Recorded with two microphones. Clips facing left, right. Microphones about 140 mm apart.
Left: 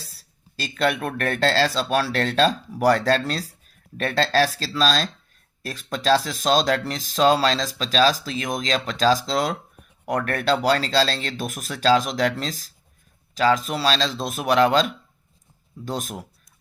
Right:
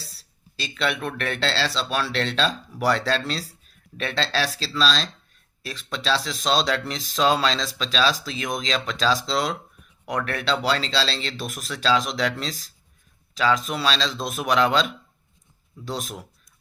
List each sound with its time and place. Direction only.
0.0 s speech: 45° left (ahead or behind)